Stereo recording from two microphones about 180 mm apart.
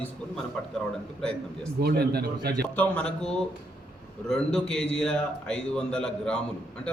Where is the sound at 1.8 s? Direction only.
60° right (ahead or behind).